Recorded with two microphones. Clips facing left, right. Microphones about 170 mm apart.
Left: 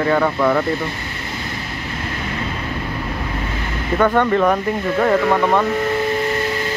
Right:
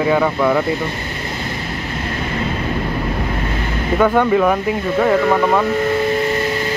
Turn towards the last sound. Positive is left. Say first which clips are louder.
# right 1 dB
turn(degrees=0)  # may be behind; listen again after turning